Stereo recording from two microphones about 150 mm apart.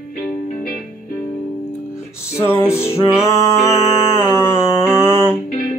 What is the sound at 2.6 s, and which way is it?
Music, 20° left (ahead or behind).